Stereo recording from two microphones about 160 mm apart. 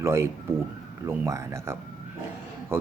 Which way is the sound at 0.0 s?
15° right (ahead or behind).